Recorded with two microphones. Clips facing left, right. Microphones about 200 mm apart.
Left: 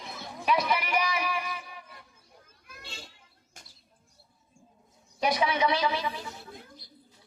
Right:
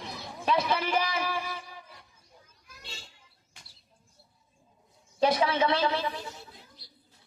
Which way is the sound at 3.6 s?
45° left (ahead or behind).